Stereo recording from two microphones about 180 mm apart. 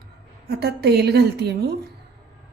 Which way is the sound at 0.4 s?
65° right (ahead or behind).